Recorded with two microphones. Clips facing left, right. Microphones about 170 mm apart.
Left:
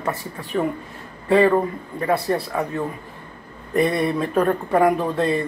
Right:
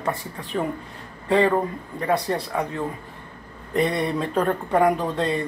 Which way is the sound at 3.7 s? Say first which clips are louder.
Left 3 dB; 20° right (ahead or behind).